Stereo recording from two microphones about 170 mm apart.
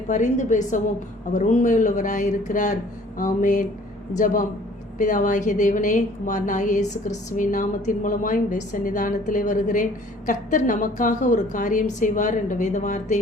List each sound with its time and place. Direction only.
0.1 s a woman's voice: 45° left (ahead or behind)
4.9 s a woman's voice: 50° left (ahead or behind)